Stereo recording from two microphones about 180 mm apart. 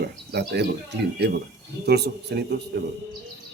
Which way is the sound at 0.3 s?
65° right (ahead or behind).